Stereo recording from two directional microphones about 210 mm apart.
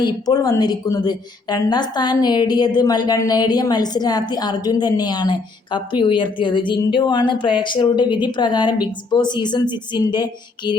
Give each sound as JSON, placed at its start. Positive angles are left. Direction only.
{"t": 0.0, "sound": "a woman's voice", "side_deg": 15}